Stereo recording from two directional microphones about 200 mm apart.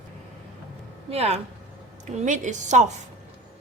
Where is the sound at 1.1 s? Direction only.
30° right (ahead or behind).